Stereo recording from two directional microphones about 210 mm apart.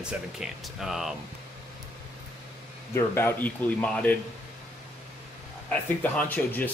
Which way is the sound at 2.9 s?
10° left (ahead or behind).